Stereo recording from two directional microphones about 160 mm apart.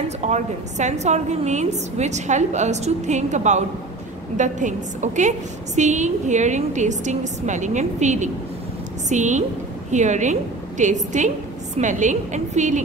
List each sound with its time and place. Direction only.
0.2 s a woman's voice: 45° right (ahead or behind)